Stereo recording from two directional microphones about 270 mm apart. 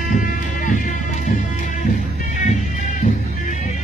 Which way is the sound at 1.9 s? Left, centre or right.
Left.